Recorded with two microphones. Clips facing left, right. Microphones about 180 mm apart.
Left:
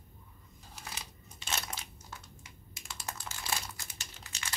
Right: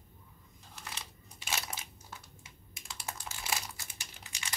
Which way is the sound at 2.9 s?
10° right (ahead or behind).